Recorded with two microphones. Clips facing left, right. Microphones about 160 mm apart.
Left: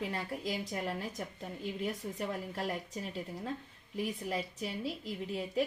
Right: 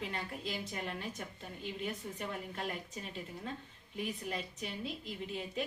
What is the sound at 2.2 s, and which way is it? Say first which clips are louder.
Speech: left 4 dB; 35° left (ahead or behind).